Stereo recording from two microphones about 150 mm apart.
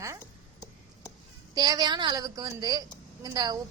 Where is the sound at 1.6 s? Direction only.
25° right (ahead or behind).